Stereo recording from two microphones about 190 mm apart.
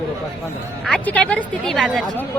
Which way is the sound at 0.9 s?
5° left (ahead or behind).